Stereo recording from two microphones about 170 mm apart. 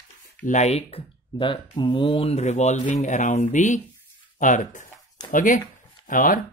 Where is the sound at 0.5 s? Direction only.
40° left (ahead or behind).